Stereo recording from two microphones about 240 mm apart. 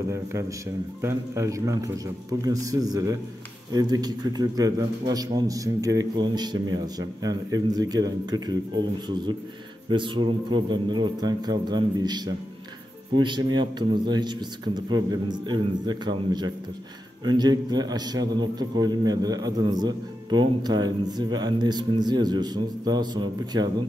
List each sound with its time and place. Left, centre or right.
0.1 s a man's voice: centre